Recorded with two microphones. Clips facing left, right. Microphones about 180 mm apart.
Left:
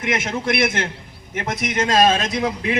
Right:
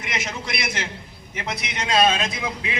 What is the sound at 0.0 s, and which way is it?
A man's voice, 55° left (ahead or behind).